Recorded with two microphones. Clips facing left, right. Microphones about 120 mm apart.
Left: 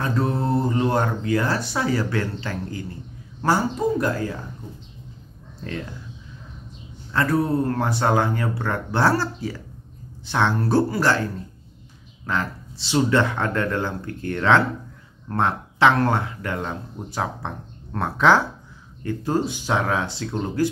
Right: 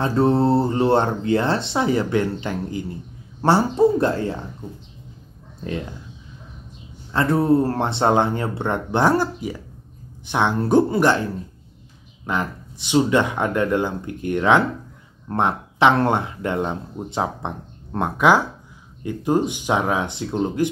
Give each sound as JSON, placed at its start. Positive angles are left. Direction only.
{"t": 0.0, "sound": "speech", "side_deg": -30}
{"t": 7.1, "sound": "speech", "side_deg": -25}
{"t": 12.3, "sound": "speech", "side_deg": -20}